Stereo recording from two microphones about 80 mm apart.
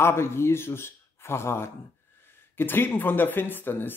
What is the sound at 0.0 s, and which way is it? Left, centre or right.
Speech, left.